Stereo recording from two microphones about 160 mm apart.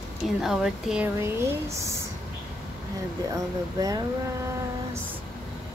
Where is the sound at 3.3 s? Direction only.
20° right (ahead or behind).